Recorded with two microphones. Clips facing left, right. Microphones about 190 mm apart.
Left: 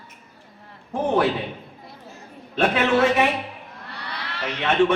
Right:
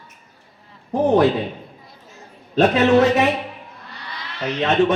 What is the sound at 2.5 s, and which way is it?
Speech, 40° right (ahead or behind).